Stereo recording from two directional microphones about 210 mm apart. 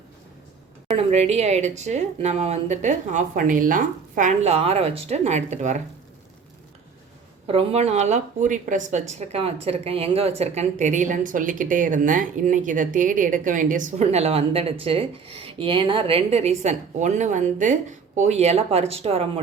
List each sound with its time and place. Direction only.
0.9 s a woman's voice: 30° right (ahead or behind)
7.4 s a woman's voice: 30° right (ahead or behind)